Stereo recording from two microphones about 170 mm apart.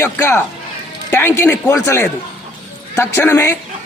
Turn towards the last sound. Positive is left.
turn(degrees=15)  # may be behind; listen again after turning